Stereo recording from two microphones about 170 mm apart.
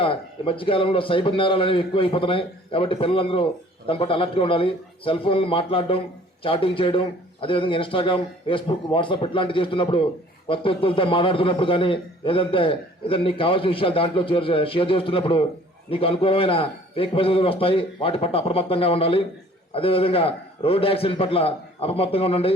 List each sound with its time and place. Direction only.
0.0 s a man's voice: 30° left (ahead or behind)